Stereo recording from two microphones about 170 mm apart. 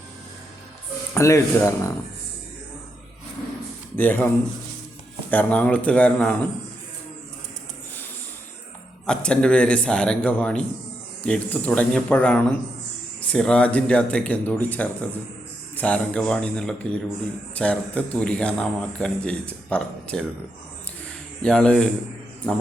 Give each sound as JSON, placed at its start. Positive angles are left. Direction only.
{"t": 1.1, "sound": "a man's voice", "side_deg": 15}
{"t": 3.9, "sound": "a man's voice", "side_deg": 10}
{"t": 5.3, "sound": "a man's voice", "side_deg": 10}
{"t": 9.0, "sound": "a man's voice", "side_deg": 5}
{"t": 21.4, "sound": "a man's voice", "side_deg": 5}